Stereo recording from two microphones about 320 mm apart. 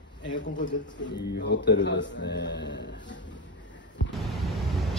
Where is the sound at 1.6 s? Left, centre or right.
Left.